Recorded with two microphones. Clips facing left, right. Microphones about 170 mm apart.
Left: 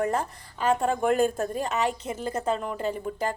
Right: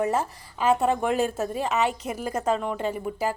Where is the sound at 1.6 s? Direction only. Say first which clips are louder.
Right 2 dB; 35° left (ahead or behind).